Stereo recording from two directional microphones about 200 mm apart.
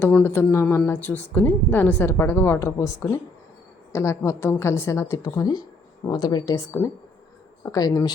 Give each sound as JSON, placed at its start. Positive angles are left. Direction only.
{"t": 0.0, "sound": "a woman's voice", "side_deg": 10}